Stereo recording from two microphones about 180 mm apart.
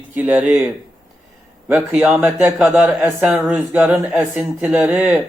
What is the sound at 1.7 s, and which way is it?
A man's voice, 5° right (ahead or behind).